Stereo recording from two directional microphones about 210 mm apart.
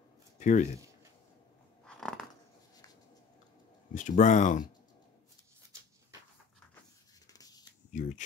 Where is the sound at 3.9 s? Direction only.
35° left (ahead or behind).